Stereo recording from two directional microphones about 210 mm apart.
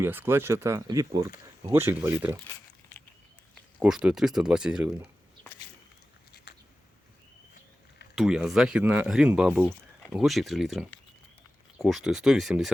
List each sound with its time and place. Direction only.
0.0 s speech: 10° right (ahead or behind)
3.8 s speech: 5° right (ahead or behind)
6.3 s a sound: 50° left (ahead or behind)
8.1 s speech: centre (ahead or behind)